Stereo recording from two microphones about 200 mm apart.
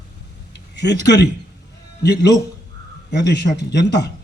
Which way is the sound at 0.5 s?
55° left (ahead or behind).